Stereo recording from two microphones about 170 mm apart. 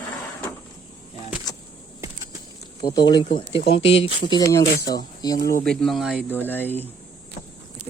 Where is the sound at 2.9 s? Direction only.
25° left (ahead or behind).